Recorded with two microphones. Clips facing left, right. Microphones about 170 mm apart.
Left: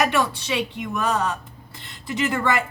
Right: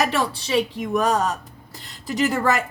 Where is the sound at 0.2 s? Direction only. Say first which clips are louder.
Right 2 dB; 40° right (ahead or behind).